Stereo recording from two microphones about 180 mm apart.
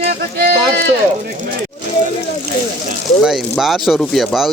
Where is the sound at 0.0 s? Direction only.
65° right (ahead or behind).